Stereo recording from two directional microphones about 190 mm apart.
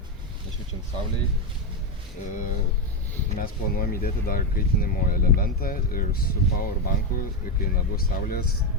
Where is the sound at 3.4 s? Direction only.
50° left (ahead or behind).